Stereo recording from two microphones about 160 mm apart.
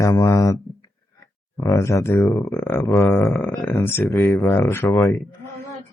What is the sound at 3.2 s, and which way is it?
Speech, 5° left (ahead or behind).